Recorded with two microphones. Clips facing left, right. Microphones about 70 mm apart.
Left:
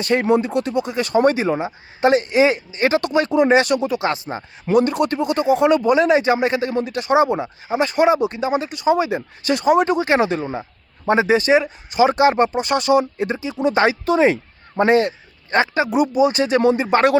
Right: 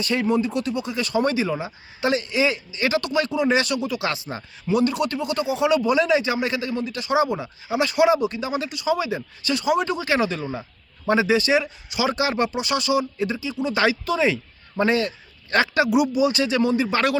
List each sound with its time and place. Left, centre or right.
0.0 s speech: left
4.6 s a man's voice: left
15.4 s a man's voice: left